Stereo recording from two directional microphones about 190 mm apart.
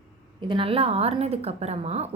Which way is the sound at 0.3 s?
25° right (ahead or behind).